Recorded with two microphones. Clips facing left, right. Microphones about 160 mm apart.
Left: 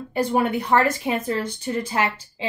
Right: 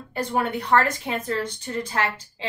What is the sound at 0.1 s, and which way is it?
Speech, 10° left (ahead or behind).